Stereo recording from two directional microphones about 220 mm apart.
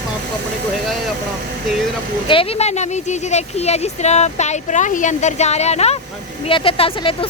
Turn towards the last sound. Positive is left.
turn(degrees=25)  # may be behind; listen again after turning